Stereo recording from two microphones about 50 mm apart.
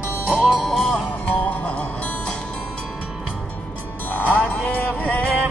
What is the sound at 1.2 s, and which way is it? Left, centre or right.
Music, left.